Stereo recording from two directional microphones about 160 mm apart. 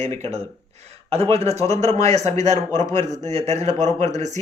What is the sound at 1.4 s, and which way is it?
Speech, 20° left (ahead or behind).